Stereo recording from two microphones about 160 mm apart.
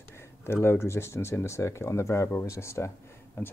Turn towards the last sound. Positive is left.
turn(degrees=15)  # may be behind; listen again after turning